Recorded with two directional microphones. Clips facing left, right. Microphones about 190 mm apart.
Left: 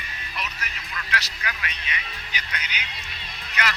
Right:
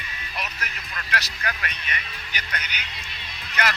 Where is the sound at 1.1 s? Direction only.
50° right (ahead or behind).